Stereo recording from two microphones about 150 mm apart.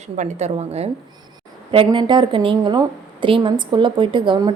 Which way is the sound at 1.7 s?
35° right (ahead or behind).